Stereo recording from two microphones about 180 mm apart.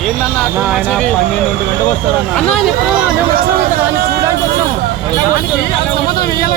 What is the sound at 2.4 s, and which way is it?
Speech, 5° left (ahead or behind).